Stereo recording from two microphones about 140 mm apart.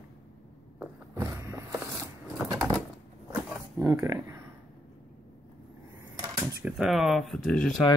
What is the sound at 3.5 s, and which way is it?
Wild animals, 20° right (ahead or behind).